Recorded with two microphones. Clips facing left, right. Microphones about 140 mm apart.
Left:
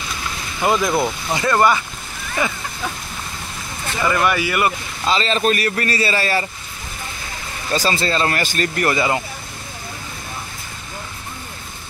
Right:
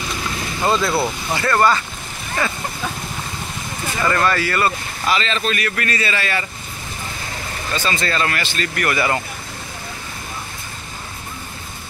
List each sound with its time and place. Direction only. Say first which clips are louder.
0.7 s speech: left 1 dB; 15° left (ahead or behind)
4.0 s speech: even; 10° left (ahead or behind)
5.1 s a man's voice: left 4 dB; 35° left (ahead or behind)
7.7 s a man's voice: left 3 dB; 35° left (ahead or behind)
8.4 s a man's voice: left 3 dB; 45° left (ahead or behind)